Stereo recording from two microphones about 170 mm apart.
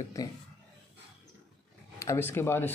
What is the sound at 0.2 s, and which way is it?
Speech, 20° left (ahead or behind).